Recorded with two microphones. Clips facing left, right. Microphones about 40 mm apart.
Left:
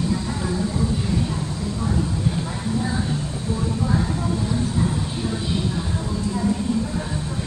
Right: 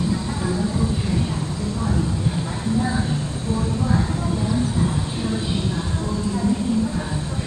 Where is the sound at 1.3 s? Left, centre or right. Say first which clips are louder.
Right 1 dB; centre.